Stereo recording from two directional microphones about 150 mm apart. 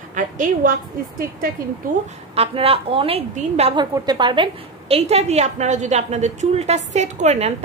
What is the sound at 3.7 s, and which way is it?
Speech, 30° right (ahead or behind).